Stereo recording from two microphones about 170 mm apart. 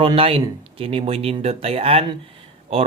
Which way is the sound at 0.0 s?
35° right (ahead or behind).